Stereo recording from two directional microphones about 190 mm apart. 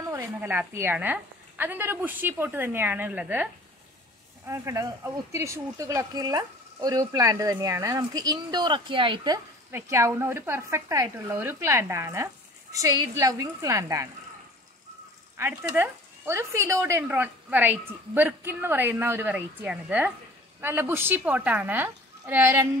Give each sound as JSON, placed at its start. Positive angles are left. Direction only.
{"t": 0.1, "sound": "speech", "side_deg": -10}
{"t": 4.5, "sound": "speech", "side_deg": -15}
{"t": 15.3, "sound": "speech", "side_deg": -15}